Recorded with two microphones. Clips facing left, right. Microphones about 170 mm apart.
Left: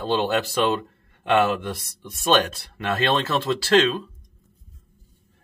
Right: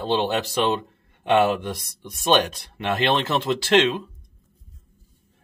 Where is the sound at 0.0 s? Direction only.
20° right (ahead or behind).